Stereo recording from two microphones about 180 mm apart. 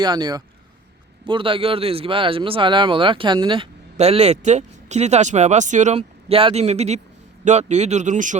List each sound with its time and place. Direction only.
0.0 s speech: 25° right (ahead or behind); by 8.4 s 45° right (ahead or behind)